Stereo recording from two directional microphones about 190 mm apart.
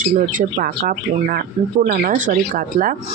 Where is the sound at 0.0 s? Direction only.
45° right (ahead or behind).